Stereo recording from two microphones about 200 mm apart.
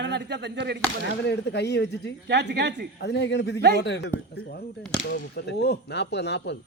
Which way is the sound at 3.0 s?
60° left (ahead or behind).